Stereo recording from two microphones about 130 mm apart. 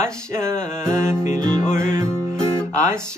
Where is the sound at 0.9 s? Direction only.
20° right (ahead or behind).